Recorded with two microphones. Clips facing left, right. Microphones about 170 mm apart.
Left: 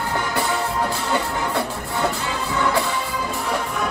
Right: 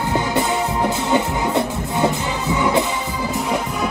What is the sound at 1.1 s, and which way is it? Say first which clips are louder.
Music: right 6 dB; 20° right (ahead or behind).